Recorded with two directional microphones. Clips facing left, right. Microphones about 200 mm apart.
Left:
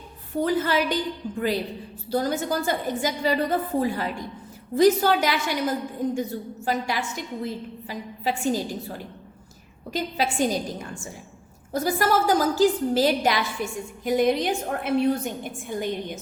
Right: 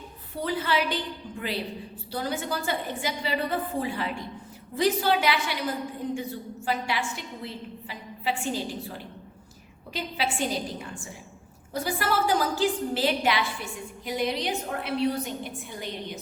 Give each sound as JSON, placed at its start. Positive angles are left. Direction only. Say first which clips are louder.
{"t": 0.4, "sound": "a woman's voice", "louder": "left 4 dB", "side_deg": 45}
{"t": 9.9, "sound": "a woman's voice", "louder": "left 4 dB", "side_deg": 45}